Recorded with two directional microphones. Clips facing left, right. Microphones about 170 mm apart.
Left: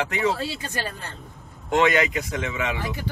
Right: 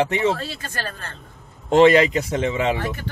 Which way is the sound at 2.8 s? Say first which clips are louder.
Right 2 dB; 15° left (ahead or behind).